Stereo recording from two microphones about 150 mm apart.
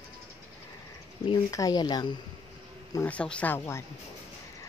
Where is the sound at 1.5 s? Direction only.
25° left (ahead or behind).